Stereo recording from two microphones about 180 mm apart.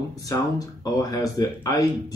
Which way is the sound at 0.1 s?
20° left (ahead or behind).